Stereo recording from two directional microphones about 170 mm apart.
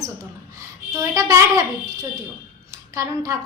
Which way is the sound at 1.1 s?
20° right (ahead or behind).